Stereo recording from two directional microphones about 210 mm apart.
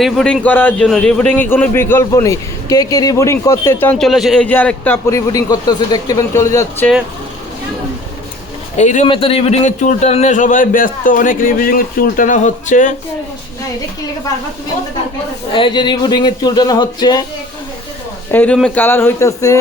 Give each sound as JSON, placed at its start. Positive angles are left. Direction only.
{"t": 0.0, "sound": "a man's voice", "side_deg": 0}
{"t": 8.7, "sound": "a man's voice", "side_deg": 35}
{"t": 15.5, "sound": "speech", "side_deg": 20}
{"t": 18.3, "sound": "a man's voice", "side_deg": 5}